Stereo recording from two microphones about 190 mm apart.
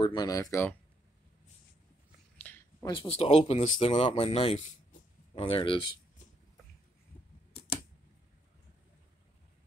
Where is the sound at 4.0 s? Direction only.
30° left (ahead or behind).